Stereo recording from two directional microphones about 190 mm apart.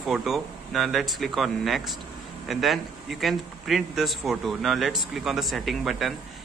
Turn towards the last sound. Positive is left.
turn(degrees=0)  # may be behind; listen again after turning